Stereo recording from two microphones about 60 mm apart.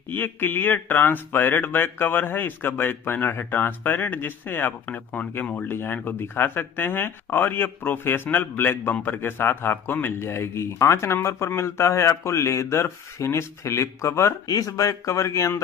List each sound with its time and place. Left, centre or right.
0.1 s speech: left
4.8 s a man's voice: left
14.5 s a man's voice: left